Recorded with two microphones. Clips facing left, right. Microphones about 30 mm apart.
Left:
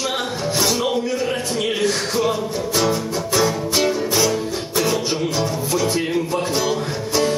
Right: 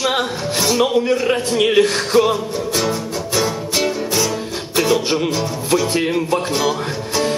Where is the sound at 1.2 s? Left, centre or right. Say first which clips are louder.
Right 5 dB; right.